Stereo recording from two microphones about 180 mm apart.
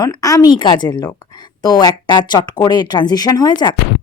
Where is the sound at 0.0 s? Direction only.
20° left (ahead or behind).